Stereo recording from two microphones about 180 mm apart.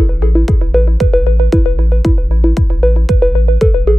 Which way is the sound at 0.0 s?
Centre (ahead or behind).